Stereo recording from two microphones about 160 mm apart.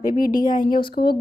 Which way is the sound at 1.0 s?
70° left (ahead or behind).